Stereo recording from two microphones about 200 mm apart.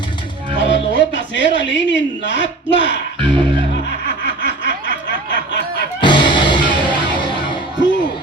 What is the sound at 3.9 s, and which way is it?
Snicker, 65° left (ahead or behind).